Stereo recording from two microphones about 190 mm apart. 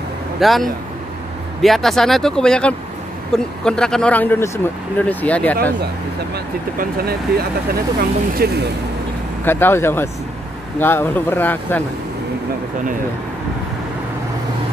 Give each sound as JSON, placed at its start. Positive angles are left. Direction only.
{"t": 0.4, "sound": "speech", "side_deg": 0}
{"t": 6.3, "sound": "speech", "side_deg": -55}
{"t": 9.4, "sound": "speech", "side_deg": 10}